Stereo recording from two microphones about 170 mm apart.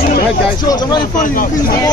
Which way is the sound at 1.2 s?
55° left (ahead or behind).